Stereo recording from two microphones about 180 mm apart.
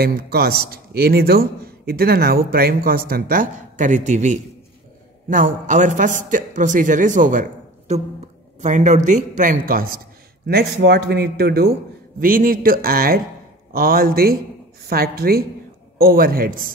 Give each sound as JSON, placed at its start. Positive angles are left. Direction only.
{"t": 0.0, "sound": "a man's voice", "side_deg": -60}
{"t": 8.5, "sound": "a man's voice", "side_deg": -40}
{"t": 9.9, "sound": "a man's voice", "side_deg": -60}
{"t": 12.2, "sound": "a man's voice", "side_deg": -50}